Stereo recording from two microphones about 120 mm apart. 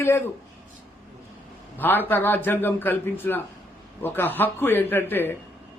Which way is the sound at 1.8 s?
15° left (ahead or behind).